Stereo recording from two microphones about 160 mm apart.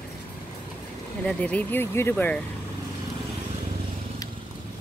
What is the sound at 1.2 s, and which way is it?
Speech, 10° left (ahead or behind).